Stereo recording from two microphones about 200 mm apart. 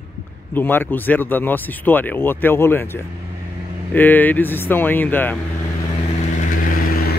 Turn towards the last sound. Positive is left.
turn(degrees=45)  # may be behind; listen again after turning